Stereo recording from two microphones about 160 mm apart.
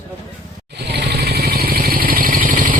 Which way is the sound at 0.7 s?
90° right.